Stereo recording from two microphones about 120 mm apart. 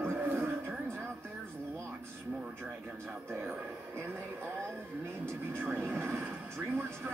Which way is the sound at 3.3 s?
15° right (ahead or behind).